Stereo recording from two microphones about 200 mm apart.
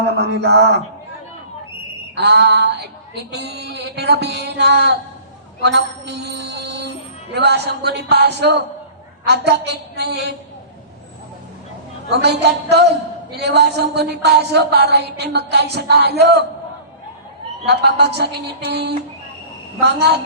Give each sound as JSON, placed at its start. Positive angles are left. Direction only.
{"t": 0.0, "sound": "a sound", "side_deg": -55}
{"t": 2.1, "sound": "a woman's voice", "side_deg": -55}
{"t": 12.1, "sound": "a woman's voice", "side_deg": -55}
{"t": 17.7, "sound": "a woman's voice", "side_deg": -55}